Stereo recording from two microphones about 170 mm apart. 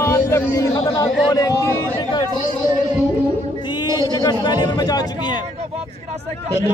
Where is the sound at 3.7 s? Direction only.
25° left (ahead or behind).